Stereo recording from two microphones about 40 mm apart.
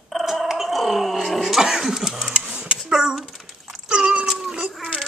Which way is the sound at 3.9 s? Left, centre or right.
Centre.